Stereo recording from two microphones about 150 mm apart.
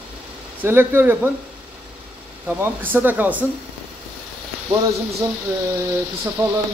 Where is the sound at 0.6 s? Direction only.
15° right (ahead or behind).